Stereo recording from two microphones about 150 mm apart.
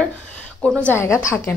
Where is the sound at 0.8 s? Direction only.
10° left (ahead or behind).